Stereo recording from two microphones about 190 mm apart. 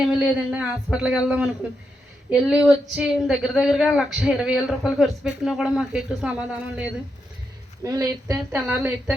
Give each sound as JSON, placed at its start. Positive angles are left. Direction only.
{"t": 0.0, "sound": "speech", "side_deg": -5}
{"t": 2.5, "sound": "speech", "side_deg": -5}
{"t": 7.9, "sound": "a woman's voice", "side_deg": -15}
{"t": 8.3, "sound": "speech", "side_deg": -5}